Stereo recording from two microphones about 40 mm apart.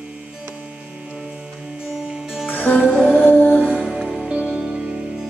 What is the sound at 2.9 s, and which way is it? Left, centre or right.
Music, left.